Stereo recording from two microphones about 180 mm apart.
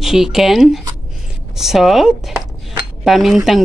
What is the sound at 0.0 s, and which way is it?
Speech, centre (ahead or behind).